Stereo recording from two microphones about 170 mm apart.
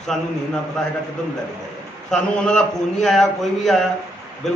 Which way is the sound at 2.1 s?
5° left (ahead or behind).